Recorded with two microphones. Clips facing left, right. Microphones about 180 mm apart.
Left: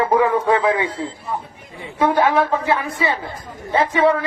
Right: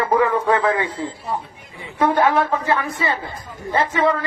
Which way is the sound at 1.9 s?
10° left (ahead or behind).